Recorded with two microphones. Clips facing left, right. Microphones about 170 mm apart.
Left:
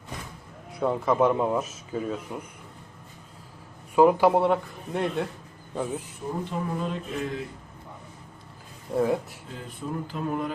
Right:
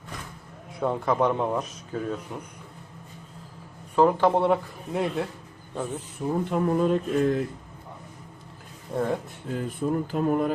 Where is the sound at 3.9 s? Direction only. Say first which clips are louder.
Left 2 dB; 10° left (ahead or behind).